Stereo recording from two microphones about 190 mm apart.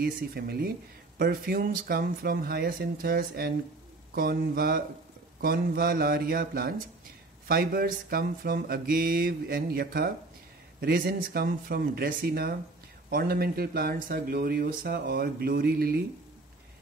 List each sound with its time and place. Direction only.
0.0 s speech: 55° right (ahead or behind)